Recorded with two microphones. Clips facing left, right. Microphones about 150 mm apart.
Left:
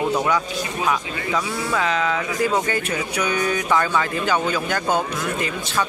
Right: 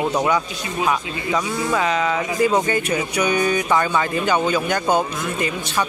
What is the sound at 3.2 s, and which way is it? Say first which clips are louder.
Speech: right 3 dB; 10° right (ahead or behind).